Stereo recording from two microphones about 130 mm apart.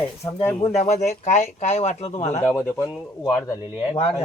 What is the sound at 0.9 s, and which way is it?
Speech, 60° left (ahead or behind).